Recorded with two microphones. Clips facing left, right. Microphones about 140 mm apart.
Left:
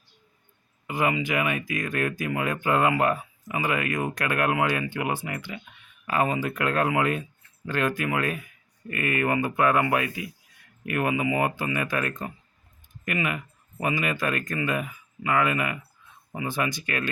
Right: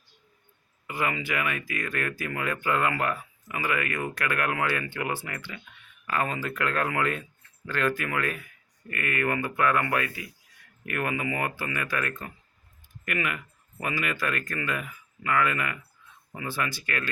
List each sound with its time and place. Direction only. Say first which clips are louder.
0.9 s speech: left 4 dB; 20° left (ahead or behind)